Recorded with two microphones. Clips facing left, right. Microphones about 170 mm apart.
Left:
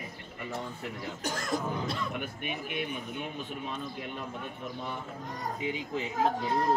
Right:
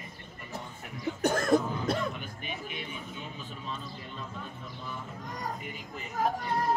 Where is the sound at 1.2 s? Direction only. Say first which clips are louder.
Right 7 dB; 55° right (ahead or behind).